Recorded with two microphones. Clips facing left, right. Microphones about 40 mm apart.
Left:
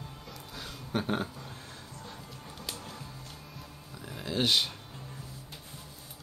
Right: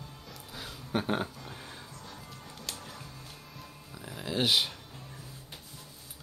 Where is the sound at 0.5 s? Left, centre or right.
Centre.